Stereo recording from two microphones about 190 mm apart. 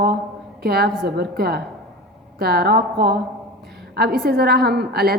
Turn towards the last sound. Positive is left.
turn(degrees=-55)  # may be behind; listen again after turning